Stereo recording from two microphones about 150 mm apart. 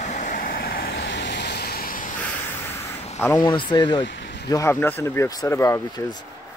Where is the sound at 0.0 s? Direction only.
55° left (ahead or behind); by 2.0 s 75° left (ahead or behind).